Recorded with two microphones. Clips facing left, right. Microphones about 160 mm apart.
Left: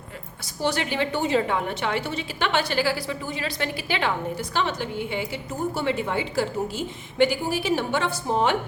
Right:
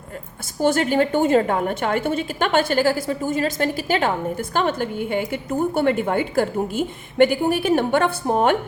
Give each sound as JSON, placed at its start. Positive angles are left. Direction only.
{"t": 0.6, "sound": "a woman's voice", "side_deg": -45}